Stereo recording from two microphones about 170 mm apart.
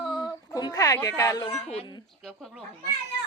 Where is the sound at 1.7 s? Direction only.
35° left (ahead or behind).